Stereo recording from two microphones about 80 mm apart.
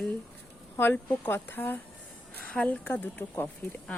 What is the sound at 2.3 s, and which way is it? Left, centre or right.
Speech, centre.